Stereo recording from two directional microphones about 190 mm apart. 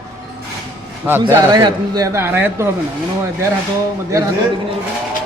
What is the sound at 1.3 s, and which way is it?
A man's voice, 20° right (ahead or behind).